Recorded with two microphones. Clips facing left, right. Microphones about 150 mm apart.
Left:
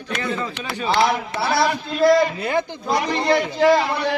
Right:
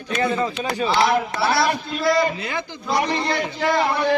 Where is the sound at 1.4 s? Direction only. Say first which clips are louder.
Left 3 dB; 50° left (ahead or behind).